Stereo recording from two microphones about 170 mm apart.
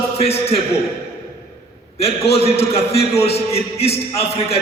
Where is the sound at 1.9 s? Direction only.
35° left (ahead or behind).